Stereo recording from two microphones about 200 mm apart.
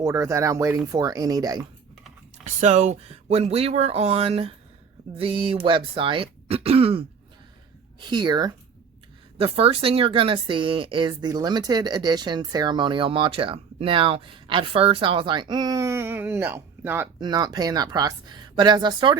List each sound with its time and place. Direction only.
0.0 s speech: 15° right (ahead or behind)
2.4 s speech: 35° right (ahead or behind)
8.0 s speech: 20° right (ahead or behind)
17.2 s speech: 20° right (ahead or behind)